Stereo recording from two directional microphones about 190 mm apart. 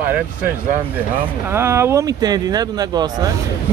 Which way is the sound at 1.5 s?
15° right (ahead or behind).